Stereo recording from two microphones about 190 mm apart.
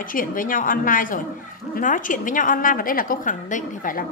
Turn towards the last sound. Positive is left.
turn(degrees=45)  # may be behind; listen again after turning